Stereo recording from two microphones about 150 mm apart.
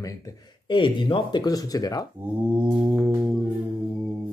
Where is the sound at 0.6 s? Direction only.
35° left (ahead or behind).